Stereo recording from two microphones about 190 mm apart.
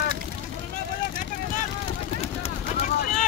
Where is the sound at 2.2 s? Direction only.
35° left (ahead or behind).